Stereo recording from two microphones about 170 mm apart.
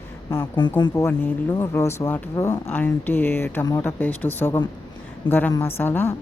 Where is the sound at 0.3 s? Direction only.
15° left (ahead or behind).